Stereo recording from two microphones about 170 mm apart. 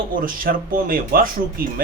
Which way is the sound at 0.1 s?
55° right (ahead or behind).